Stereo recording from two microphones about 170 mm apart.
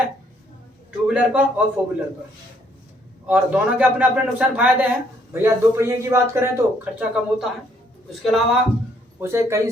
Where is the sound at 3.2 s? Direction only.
10° right (ahead or behind).